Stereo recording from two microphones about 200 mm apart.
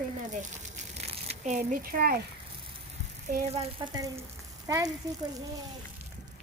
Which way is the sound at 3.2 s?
35° right (ahead or behind).